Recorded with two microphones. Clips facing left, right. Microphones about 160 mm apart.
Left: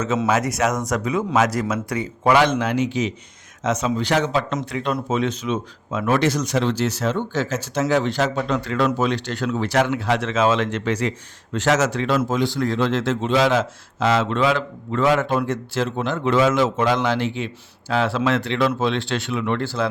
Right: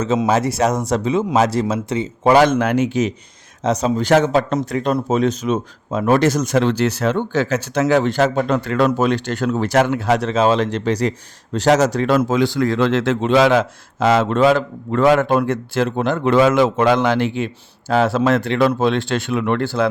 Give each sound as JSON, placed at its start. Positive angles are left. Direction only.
{"t": 0.3, "sound": "speech", "side_deg": -30}
{"t": 2.3, "sound": "speech", "side_deg": -45}
{"t": 3.6, "sound": "speech", "side_deg": -35}
{"t": 12.3, "sound": "a man's voice", "side_deg": -90}